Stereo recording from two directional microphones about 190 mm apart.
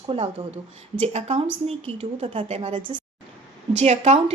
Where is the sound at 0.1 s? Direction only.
35° right (ahead or behind).